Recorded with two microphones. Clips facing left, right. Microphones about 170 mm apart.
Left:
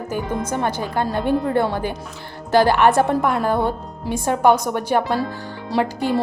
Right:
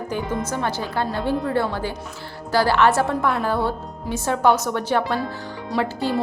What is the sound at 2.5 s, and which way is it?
Speech, 20° left (ahead or behind).